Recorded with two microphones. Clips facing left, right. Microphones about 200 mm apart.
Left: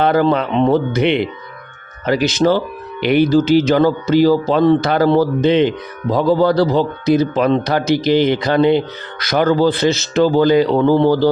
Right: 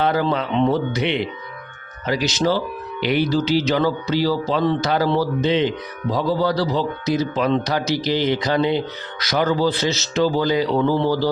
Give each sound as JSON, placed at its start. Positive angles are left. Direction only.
{"t": 0.0, "sound": "speech", "side_deg": 55}